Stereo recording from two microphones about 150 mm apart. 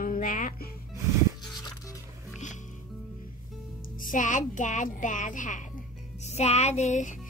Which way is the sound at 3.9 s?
60° left (ahead or behind).